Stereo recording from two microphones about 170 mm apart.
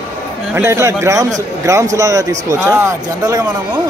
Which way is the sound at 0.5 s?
15° right (ahead or behind).